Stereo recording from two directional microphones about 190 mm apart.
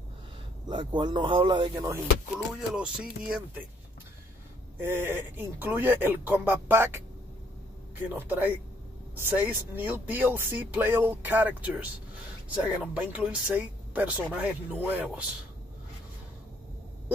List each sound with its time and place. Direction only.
0.7 s speech: 25° right (ahead or behind)
2.7 s speech: 5° right (ahead or behind)
4.7 s speech: 10° right (ahead or behind)
8.1 s speech: 10° right (ahead or behind)